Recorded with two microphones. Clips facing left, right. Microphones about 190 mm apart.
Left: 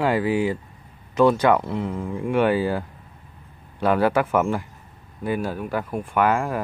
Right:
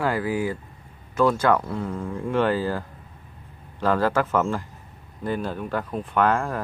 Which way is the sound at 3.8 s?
15° left (ahead or behind).